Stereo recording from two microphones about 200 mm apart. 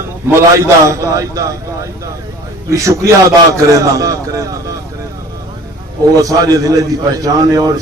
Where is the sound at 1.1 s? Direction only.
15° right (ahead or behind).